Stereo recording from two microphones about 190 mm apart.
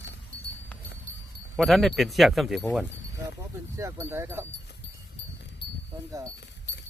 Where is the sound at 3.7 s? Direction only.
15° right (ahead or behind).